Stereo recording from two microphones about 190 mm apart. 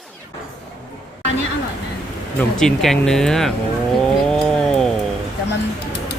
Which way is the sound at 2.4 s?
5° left (ahead or behind).